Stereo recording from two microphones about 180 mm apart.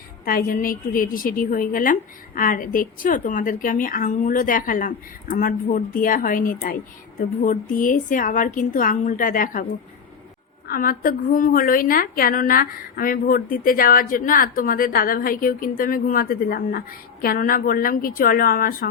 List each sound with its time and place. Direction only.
0.3 s a woman's voice: 50° left (ahead or behind)
10.7 s a woman's voice: 50° left (ahead or behind)